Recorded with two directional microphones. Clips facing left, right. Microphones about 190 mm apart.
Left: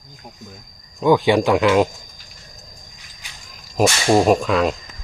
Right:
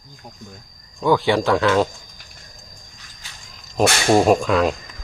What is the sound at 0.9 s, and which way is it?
Speech, 15° left (ahead or behind).